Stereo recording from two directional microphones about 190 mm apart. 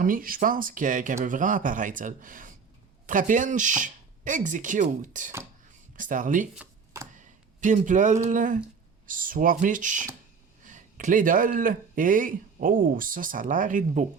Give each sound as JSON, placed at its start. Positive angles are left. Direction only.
{"t": 0.0, "sound": "speech", "side_deg": -45}
{"t": 6.6, "sound": "a sound", "side_deg": -15}
{"t": 7.2, "sound": "speech", "side_deg": -40}